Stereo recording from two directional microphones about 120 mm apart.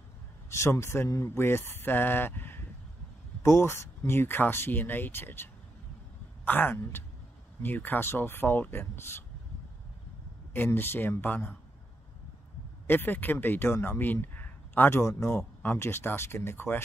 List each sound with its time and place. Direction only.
0.5 s speech: 25° left (ahead or behind)
10.5 s speech: 15° left (ahead or behind)
12.8 s speech: 15° left (ahead or behind)